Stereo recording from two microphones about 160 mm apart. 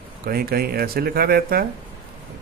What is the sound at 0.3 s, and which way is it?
Speech, 70° right (ahead or behind).